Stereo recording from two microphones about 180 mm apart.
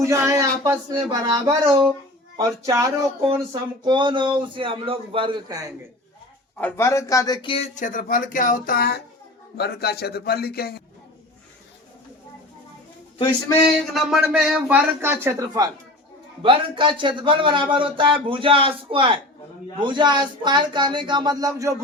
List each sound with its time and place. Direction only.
0.0 s a man's voice: 15° right (ahead or behind)
6.6 s speech: 10° left (ahead or behind)
7.4 s speech: 30° left (ahead or behind)
7.8 s a man's voice: 45° left (ahead or behind)
13.7 s speech: centre (ahead or behind)
15.0 s a man's voice: 15° right (ahead or behind)